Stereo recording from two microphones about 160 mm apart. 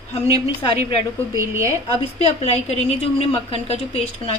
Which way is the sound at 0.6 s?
35° left (ahead or behind).